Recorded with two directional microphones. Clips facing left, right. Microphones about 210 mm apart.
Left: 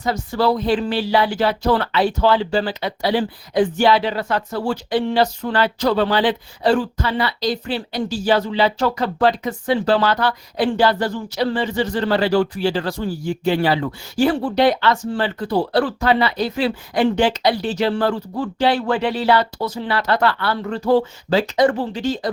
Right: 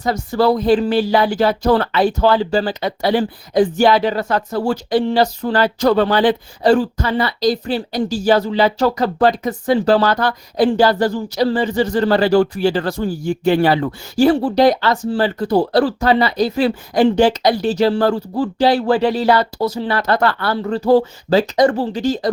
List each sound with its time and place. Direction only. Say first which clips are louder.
0.0 s speech: right 3 dB; 45° right (ahead or behind)
14.2 s speech: right 4 dB; 35° right (ahead or behind)